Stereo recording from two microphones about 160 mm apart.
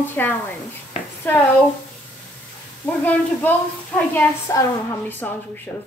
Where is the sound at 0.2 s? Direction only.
10° left (ahead or behind).